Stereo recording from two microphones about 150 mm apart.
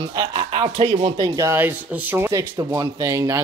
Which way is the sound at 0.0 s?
25° right (ahead or behind).